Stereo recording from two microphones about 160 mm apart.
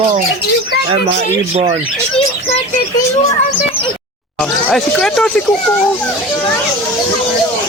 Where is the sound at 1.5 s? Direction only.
35° right (ahead or behind).